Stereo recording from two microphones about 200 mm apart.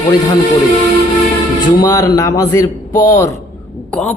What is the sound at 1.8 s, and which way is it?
Speech, 15° left (ahead or behind).